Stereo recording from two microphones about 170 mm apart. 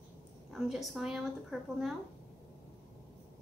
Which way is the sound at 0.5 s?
Centre (ahead or behind).